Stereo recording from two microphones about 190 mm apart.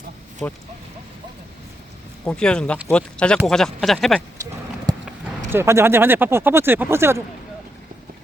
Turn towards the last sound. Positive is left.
turn(degrees=-15)  # may be behind; listen again after turning